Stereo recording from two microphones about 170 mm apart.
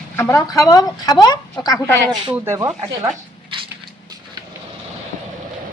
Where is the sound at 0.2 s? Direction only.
15° left (ahead or behind).